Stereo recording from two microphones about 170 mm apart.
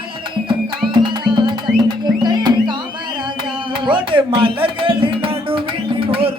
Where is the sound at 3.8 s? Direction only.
30° right (ahead or behind).